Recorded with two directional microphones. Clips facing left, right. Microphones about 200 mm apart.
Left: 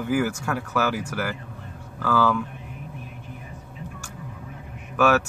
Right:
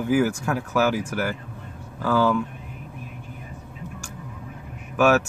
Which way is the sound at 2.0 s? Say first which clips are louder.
Right 1 dB; 20° right (ahead or behind).